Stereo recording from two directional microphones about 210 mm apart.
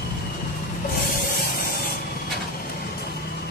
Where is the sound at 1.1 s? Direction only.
45° left (ahead or behind).